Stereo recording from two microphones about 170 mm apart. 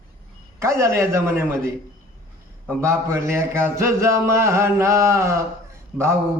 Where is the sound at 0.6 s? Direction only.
15° right (ahead or behind).